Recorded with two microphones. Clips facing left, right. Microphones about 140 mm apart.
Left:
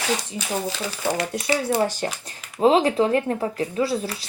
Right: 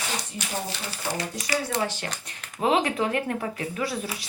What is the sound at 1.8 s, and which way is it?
Speech, 40° left (ahead or behind).